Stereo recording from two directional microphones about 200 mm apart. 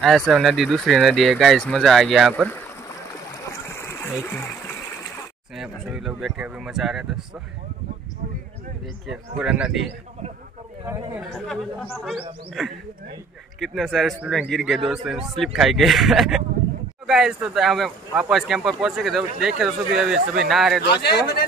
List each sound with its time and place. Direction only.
0.0 s a man's voice: centre (ahead or behind)
3.3 s stream: 15° left (ahead or behind)
4.2 s speech: 10° left (ahead or behind)
5.6 s a man's voice: 5° right (ahead or behind)
9.0 s a man's voice: centre (ahead or behind)
10.9 s a man's voice: centre (ahead or behind)
20.9 s speech: 55° left (ahead or behind)